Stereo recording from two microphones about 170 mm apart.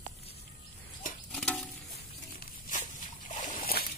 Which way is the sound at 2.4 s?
50° left (ahead or behind).